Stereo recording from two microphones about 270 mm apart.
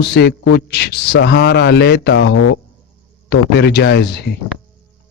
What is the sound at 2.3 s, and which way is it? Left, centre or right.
Speech, left.